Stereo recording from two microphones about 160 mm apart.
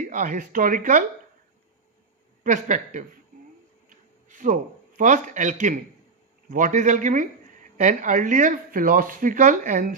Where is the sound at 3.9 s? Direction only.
55° right (ahead or behind).